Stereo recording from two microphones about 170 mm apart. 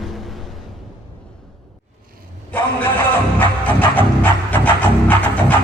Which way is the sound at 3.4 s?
10° left (ahead or behind).